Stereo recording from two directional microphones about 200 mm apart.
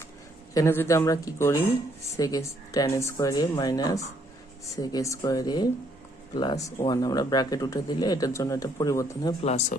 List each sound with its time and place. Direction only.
0.5 s speech: 15° left (ahead or behind)
9.4 s speech: 35° left (ahead or behind)